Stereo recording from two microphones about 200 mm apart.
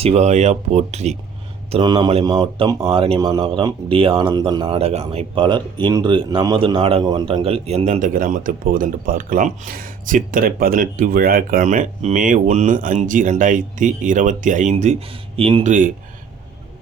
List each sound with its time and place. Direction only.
0.0 s a man's voice: 30° right (ahead or behind)
1.7 s a man's voice: 20° right (ahead or behind); by 15.9 s 40° right (ahead or behind)